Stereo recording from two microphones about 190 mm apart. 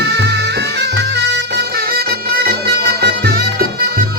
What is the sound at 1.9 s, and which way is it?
Music, 55° right (ahead or behind).